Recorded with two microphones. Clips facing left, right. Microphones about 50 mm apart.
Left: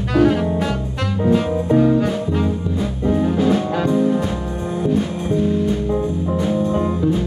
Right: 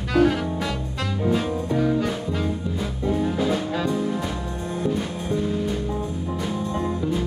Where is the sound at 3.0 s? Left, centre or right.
Centre.